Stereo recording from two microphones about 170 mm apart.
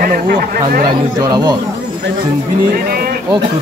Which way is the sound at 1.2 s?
25° right (ahead or behind).